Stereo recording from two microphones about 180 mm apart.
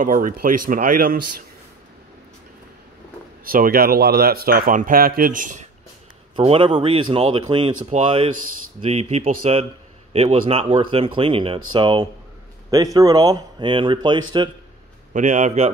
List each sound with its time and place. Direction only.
0.0 s speech: 50° right (ahead or behind)
3.4 s speech: 55° right (ahead or behind)
6.3 s speech: 30° right (ahead or behind)
15.1 s speech: 45° right (ahead or behind)